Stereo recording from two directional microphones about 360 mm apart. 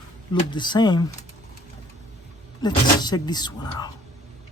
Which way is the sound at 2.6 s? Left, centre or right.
Centre.